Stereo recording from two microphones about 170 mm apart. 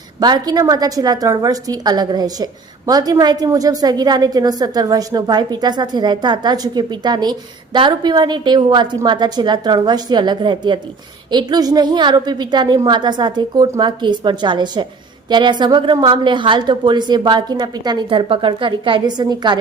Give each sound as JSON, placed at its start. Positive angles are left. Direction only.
{"t": 0.2, "sound": "a woman's voice", "side_deg": -25}